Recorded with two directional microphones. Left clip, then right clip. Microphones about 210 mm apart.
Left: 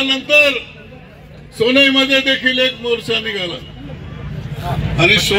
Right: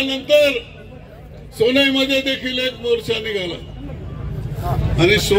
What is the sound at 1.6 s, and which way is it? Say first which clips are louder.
A man's voice: left 4 dB; 35° left (ahead or behind).